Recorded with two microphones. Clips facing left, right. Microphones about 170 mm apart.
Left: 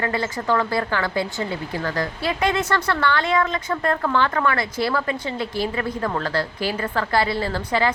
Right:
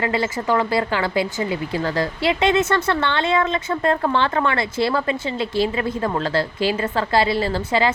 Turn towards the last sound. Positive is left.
turn(degrees=-20)  # may be behind; listen again after turning